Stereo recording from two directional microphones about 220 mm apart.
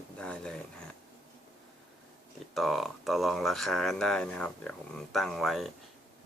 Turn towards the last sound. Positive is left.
turn(degrees=0)  # may be behind; listen again after turning